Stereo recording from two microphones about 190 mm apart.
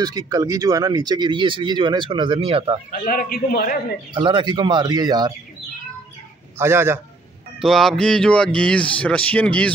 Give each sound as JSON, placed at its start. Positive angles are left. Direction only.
{"t": 0.0, "sound": "speech", "side_deg": -20}
{"t": 2.9, "sound": "a man's voice", "side_deg": 50}
{"t": 4.1, "sound": "speech", "side_deg": -25}
{"t": 6.6, "sound": "a man's voice", "side_deg": -15}
{"t": 7.6, "sound": "speech", "side_deg": 0}